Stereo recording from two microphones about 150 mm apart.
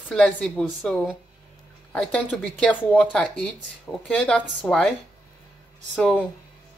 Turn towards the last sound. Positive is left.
turn(degrees=5)  # may be behind; listen again after turning